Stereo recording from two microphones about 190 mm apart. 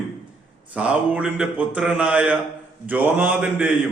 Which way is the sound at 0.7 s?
5° right (ahead or behind).